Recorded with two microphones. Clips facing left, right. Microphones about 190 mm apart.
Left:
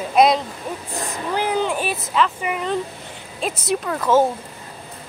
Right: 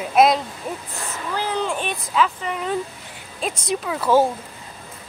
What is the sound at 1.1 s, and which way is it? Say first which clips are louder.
Speech: left 3 dB; 15° left (ahead or behind).